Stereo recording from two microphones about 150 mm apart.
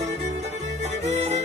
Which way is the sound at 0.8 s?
50° right (ahead or behind).